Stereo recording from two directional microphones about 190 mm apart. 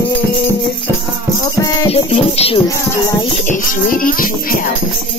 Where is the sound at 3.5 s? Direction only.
45° left (ahead or behind).